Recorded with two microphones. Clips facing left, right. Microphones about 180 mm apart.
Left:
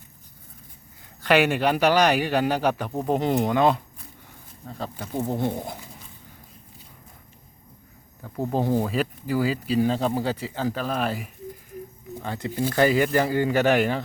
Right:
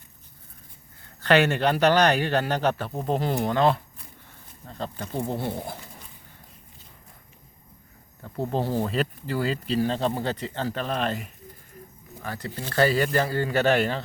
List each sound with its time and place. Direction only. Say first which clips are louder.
1.2 s speech: even; 10° left (ahead or behind)
8.2 s speech: left 2 dB; 10° left (ahead or behind)
12.2 s speech: left 7 dB; 20° left (ahead or behind)